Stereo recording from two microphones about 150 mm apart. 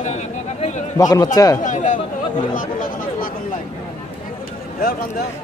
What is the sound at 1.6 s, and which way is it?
Chatter, 60° left (ahead or behind).